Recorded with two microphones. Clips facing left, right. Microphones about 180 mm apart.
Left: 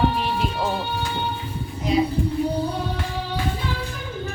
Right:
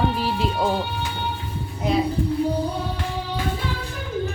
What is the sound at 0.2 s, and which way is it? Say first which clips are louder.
Music: right 1 dB; 30° right (ahead or behind).